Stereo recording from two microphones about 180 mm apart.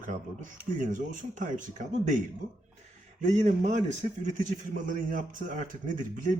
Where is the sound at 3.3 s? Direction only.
40° right (ahead or behind).